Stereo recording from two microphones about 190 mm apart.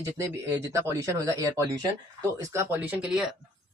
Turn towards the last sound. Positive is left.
turn(degrees=-5)  # may be behind; listen again after turning